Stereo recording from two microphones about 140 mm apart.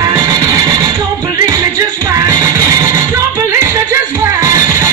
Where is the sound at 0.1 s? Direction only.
20° right (ahead or behind).